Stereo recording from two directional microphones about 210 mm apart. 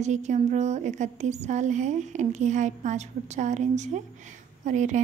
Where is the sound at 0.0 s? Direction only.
35° right (ahead or behind).